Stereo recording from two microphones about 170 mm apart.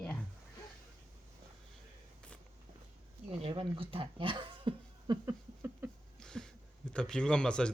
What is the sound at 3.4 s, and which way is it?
Speech, 35° right (ahead or behind).